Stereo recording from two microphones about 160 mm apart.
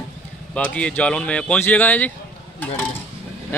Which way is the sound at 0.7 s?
5° left (ahead or behind).